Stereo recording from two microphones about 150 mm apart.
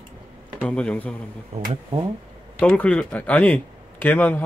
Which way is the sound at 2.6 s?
10° left (ahead or behind).